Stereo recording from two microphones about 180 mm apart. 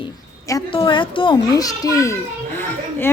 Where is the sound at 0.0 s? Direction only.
20° left (ahead or behind).